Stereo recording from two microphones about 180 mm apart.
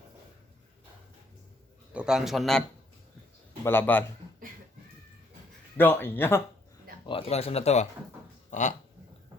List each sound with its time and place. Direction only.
1.9 s speech: 5° right (ahead or behind)
3.6 s speech: 10° left (ahead or behind)
5.7 s speech: 10° left (ahead or behind)
7.1 s speech: 35° left (ahead or behind)